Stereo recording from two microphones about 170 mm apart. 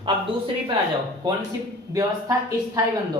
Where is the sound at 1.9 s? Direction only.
20° right (ahead or behind).